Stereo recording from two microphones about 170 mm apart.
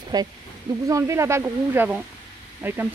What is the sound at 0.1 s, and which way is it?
Speech, 25° right (ahead or behind).